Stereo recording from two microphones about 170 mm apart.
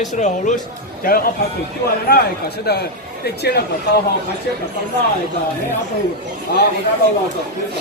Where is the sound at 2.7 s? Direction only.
70° left (ahead or behind).